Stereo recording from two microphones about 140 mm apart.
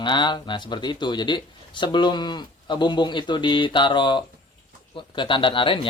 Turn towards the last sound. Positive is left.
turn(degrees=40)  # may be behind; listen again after turning